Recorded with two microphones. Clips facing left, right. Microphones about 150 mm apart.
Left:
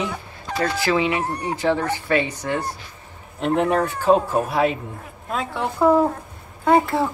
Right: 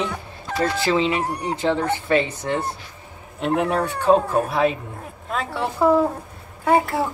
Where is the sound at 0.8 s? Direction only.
20° right (ahead or behind).